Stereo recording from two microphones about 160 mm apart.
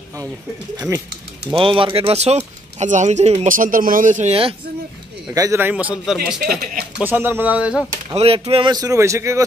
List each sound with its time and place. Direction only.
0.7 s a man's voice: 15° right (ahead or behind)
1.4 s speech: 35° right (ahead or behind)
5.3 s a man's voice: 20° right (ahead or behind)
8.1 s speech: 35° right (ahead or behind); by 9.4 s 20° right (ahead or behind)